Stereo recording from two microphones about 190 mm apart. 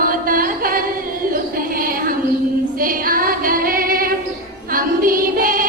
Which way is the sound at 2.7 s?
50° right (ahead or behind).